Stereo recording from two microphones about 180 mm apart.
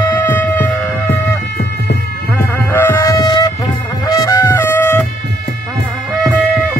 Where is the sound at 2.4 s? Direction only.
10° left (ahead or behind).